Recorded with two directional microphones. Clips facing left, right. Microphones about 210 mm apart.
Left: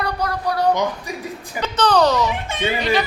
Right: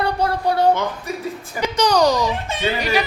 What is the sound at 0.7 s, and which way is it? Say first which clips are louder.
Speech: even; 15° left (ahead or behind).